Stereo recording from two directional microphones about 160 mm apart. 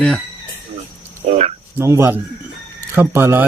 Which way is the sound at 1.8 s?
15° right (ahead or behind).